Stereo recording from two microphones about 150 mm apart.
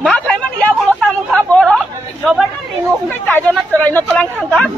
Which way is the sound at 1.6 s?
Centre (ahead or behind).